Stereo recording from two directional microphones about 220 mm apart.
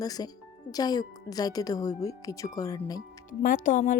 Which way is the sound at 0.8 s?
15° left (ahead or behind).